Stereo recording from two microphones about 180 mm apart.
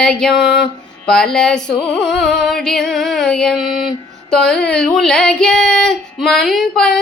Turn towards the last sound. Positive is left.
turn(degrees=5)  # may be behind; listen again after turning